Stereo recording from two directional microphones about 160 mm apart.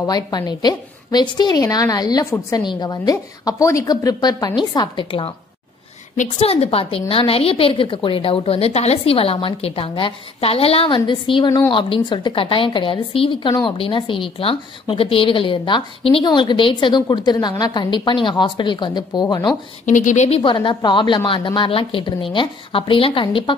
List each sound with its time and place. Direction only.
0.0 s a woman's voice: 25° left (ahead or behind)
19.9 s a woman's voice: 50° left (ahead or behind); by 23.5 s 30° left (ahead or behind)